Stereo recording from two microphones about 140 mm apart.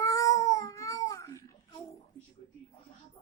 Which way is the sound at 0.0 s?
25° left (ahead or behind).